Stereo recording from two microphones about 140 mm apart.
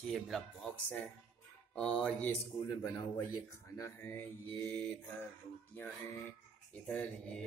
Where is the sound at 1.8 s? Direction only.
5° left (ahead or behind).